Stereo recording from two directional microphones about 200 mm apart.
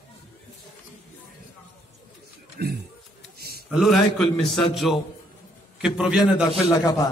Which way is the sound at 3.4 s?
50° right (ahead or behind).